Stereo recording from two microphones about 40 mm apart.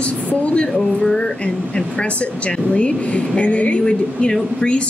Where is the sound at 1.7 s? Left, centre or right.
Left.